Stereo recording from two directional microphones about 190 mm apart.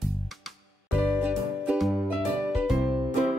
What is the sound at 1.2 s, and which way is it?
Music, 5° right (ahead or behind).